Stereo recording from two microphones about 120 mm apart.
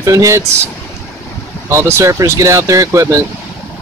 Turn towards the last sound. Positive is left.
turn(degrees=-25)  # may be behind; listen again after turning